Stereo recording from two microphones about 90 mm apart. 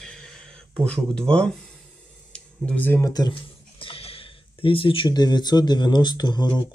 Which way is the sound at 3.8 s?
90° left.